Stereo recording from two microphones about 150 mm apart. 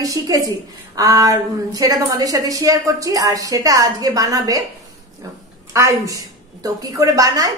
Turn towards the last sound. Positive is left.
turn(degrees=-25)  # may be behind; listen again after turning